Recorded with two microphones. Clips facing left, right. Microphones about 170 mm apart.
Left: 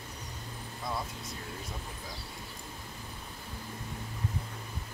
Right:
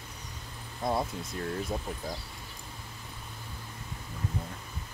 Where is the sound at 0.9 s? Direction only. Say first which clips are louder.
Right 7 dB; 50° right (ahead or behind).